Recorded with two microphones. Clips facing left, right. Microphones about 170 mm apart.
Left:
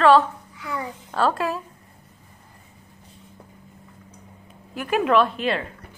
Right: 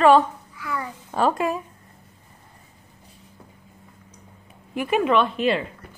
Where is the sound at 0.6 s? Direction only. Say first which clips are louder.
Right 1 dB; 20° left (ahead or behind).